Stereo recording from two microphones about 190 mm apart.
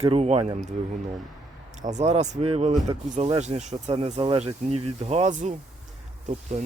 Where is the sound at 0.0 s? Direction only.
35° right (ahead or behind).